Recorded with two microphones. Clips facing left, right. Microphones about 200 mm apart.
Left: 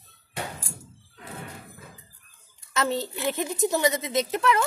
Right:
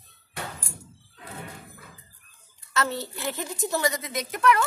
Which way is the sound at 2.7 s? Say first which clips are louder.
Left 2 dB; 20° left (ahead or behind).